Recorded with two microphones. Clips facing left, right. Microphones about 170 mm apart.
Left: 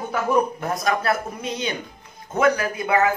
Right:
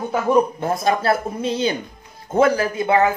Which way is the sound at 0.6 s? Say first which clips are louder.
Right 4 dB; 30° right (ahead or behind).